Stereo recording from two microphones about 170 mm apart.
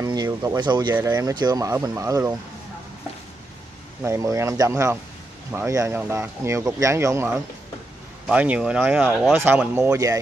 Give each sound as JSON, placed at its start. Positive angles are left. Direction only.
{"t": 0.0, "sound": "a sound", "side_deg": -20}
{"t": 0.6, "sound": "speech", "side_deg": -25}
{"t": 4.0, "sound": "speech", "side_deg": -15}